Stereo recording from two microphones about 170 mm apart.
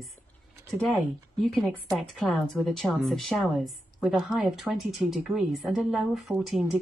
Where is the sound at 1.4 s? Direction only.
Centre (ahead or behind).